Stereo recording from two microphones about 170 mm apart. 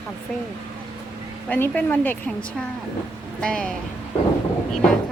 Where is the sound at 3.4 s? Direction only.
5° left (ahead or behind).